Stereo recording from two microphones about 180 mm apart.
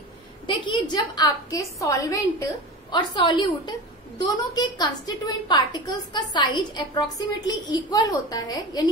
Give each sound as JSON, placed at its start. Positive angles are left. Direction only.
{"t": 0.5, "sound": "a woman's voice", "side_deg": 25}